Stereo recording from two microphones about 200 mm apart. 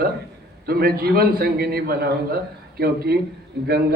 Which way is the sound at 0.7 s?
50° right (ahead or behind).